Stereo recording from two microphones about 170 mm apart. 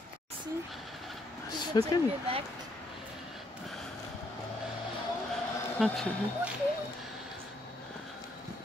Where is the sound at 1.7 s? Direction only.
25° left (ahead or behind).